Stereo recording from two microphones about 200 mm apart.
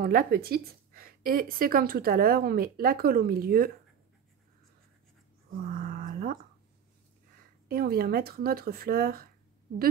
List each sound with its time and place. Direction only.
0.0 s speech: 45° right (ahead or behind)
5.7 s a sound: 45° right (ahead or behind)
7.6 s speech: 50° right (ahead or behind)